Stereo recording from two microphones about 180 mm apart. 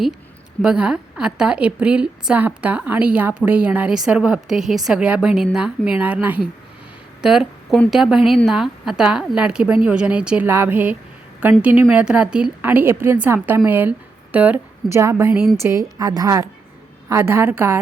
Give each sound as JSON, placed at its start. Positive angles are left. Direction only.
{"t": 0.6, "sound": "a woman's voice", "side_deg": -5}